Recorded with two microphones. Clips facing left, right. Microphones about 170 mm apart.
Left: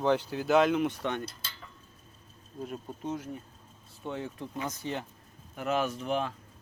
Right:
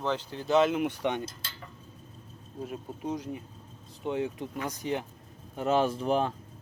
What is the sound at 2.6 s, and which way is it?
Speech, 10° right (ahead or behind).